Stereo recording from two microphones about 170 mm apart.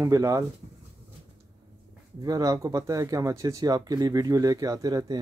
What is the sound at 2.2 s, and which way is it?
Speech, 20° right (ahead or behind).